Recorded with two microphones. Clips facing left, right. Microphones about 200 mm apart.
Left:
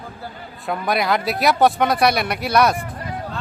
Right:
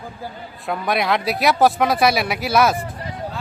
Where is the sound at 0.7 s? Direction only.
Centre (ahead or behind).